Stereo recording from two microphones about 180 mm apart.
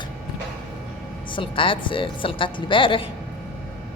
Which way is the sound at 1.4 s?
30° left (ahead or behind).